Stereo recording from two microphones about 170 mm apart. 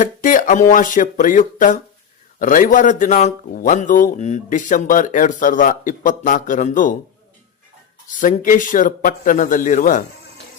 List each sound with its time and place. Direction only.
0.0 s speech: 50° left (ahead or behind)
8.2 s speech: 50° left (ahead or behind)